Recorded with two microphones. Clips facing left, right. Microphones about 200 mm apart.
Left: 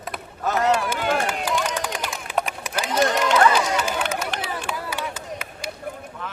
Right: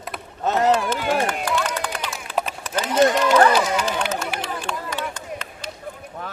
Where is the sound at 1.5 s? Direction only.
10° left (ahead or behind).